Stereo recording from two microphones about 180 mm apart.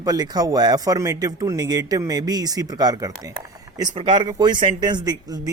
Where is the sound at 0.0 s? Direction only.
20° right (ahead or behind).